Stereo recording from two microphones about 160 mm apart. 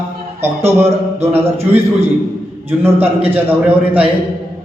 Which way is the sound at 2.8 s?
10° right (ahead or behind).